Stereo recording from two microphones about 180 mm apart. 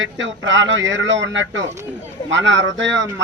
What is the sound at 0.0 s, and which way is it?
A man's voice, 90° right.